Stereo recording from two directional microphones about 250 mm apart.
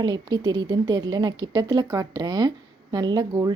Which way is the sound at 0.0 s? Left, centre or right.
Centre.